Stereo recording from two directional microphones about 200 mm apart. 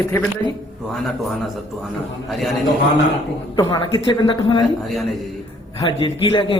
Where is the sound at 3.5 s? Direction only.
25° left (ahead or behind).